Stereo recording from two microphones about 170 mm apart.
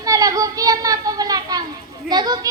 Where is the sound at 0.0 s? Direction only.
20° right (ahead or behind).